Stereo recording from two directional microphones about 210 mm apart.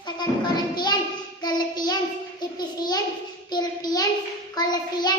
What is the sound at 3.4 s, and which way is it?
A child's voice, 20° left (ahead or behind).